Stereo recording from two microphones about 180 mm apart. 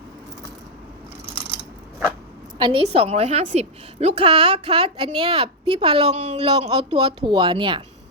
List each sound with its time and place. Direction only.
2.6 s a woman's voice: 30° right (ahead or behind)